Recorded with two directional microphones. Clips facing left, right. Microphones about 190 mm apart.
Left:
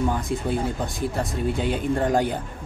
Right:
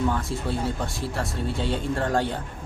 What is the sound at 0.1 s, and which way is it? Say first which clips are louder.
Speech: left 3 dB; 20° left (ahead or behind).